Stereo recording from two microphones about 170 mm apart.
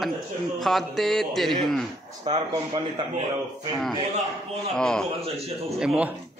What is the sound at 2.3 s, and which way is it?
Speech, 30° right (ahead or behind).